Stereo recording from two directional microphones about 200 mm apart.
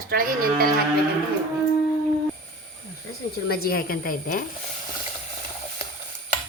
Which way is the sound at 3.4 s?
50° left (ahead or behind).